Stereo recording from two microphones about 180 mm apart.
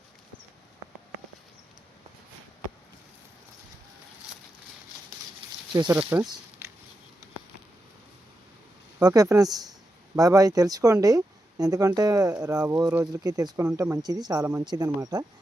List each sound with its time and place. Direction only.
5.7 s speech: 15° right (ahead or behind)
9.0 s speech: 20° right (ahead or behind)